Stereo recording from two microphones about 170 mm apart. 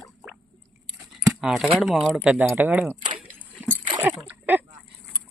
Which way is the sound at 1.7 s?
Centre (ahead or behind).